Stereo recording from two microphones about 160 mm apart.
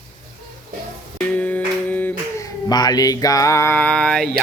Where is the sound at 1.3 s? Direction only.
10° left (ahead or behind).